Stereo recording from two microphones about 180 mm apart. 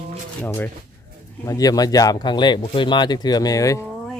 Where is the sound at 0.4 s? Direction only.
10° left (ahead or behind).